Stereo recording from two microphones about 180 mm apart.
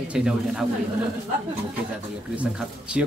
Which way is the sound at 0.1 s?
5° right (ahead or behind).